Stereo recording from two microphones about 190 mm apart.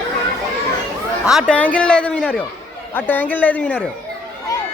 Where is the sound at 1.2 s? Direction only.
Centre (ahead or behind).